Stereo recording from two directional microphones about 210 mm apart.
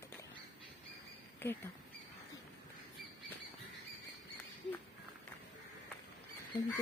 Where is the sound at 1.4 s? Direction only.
10° left (ahead or behind).